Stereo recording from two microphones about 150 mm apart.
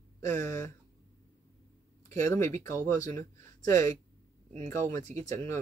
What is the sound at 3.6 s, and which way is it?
Speech, 25° left (ahead or behind).